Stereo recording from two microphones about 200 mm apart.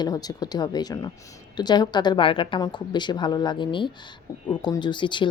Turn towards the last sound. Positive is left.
turn(degrees=25)  # may be behind; listen again after turning